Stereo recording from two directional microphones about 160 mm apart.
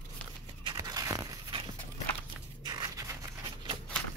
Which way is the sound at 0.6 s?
25° right (ahead or behind).